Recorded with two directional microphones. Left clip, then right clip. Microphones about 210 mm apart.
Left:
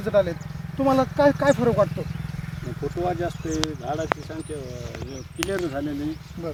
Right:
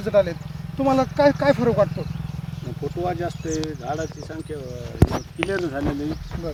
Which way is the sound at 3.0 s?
10° left (ahead or behind).